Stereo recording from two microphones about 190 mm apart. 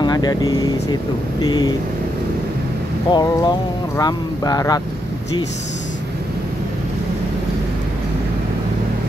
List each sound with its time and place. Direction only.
0.0 s speech: 20° left (ahead or behind)
3.1 s speech: 20° left (ahead or behind)